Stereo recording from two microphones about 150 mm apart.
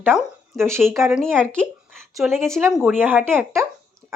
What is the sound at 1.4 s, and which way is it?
Speech, 5° left (ahead or behind).